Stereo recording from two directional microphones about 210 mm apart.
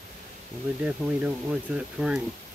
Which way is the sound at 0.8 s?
5° right (ahead or behind).